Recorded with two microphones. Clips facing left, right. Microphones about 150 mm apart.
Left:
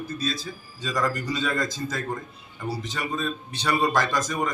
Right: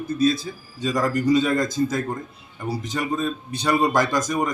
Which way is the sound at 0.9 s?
20° right (ahead or behind).